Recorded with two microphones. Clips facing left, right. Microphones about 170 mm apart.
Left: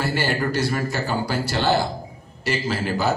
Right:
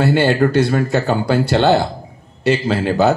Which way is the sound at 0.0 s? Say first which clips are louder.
Right 9 dB; 60° right (ahead or behind).